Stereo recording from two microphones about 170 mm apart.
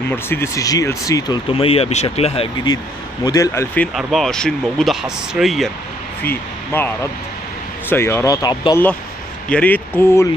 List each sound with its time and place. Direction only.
0.1 s speech: 15° left (ahead or behind)
3.9 s speech: centre (ahead or behind)
6.2 s speech: 10° left (ahead or behind)
7.9 s speech: 15° left (ahead or behind)
9.5 s speech: 10° left (ahead or behind)